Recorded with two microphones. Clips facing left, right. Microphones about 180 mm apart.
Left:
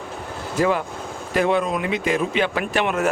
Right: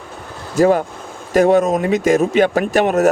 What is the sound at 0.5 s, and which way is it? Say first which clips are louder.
Speech: right 7 dB; 45° right (ahead or behind).